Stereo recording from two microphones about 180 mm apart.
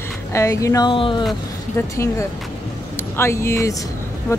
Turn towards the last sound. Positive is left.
turn(degrees=15)  # may be behind; listen again after turning